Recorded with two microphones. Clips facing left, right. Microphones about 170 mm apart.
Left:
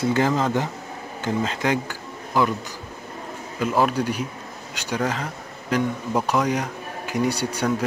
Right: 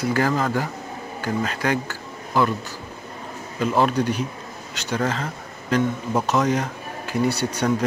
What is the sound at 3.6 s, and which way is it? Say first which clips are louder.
Speech: right 1 dB; 10° left (ahead or behind).